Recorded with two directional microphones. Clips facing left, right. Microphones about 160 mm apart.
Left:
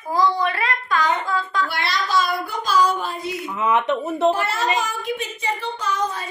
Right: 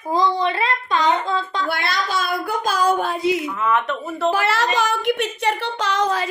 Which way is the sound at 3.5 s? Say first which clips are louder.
Left 1 dB; 20° left (ahead or behind).